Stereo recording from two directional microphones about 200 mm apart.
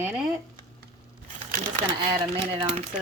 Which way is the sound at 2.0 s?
25° right (ahead or behind).